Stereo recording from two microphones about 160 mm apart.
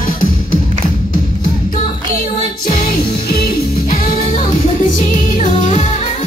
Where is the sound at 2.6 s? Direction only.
60° left (ahead or behind).